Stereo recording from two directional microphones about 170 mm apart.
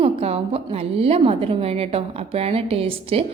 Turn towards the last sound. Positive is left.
turn(degrees=-35)  # may be behind; listen again after turning